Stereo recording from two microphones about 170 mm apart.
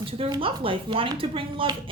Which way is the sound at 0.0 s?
30° right (ahead or behind).